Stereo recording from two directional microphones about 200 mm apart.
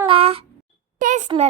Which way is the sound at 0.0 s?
30° right (ahead or behind).